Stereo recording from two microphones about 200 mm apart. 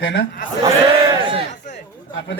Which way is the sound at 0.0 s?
70° left (ahead or behind).